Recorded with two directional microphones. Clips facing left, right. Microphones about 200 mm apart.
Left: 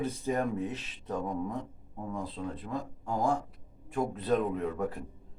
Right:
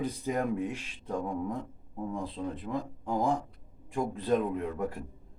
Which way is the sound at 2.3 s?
20° right (ahead or behind).